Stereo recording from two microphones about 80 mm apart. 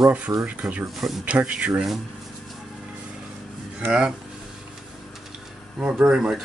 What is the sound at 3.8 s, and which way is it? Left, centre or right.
Speech, centre.